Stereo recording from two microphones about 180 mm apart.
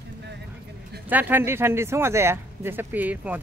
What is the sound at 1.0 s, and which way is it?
Speech, 10° right (ahead or behind).